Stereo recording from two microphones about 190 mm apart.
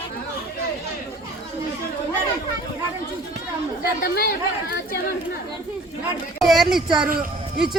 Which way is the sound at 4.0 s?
55° left (ahead or behind).